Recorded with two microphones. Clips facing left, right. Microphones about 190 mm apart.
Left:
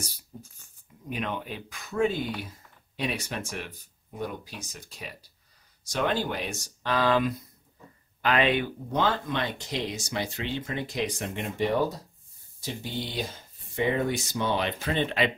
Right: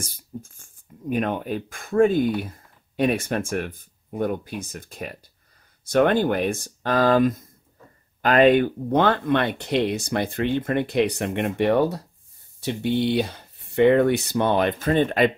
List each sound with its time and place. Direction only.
0.0 s speech: 50° right (ahead or behind)